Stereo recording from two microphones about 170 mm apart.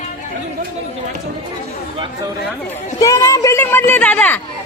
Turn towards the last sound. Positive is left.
turn(degrees=10)  # may be behind; listen again after turning